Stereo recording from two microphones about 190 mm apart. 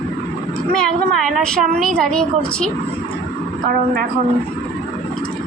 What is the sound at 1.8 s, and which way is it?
Speech, 5° left (ahead or behind).